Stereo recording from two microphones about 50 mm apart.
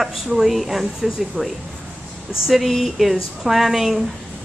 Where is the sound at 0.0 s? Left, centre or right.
Centre.